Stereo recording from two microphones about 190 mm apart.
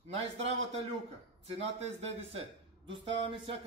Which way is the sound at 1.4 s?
35° right (ahead or behind).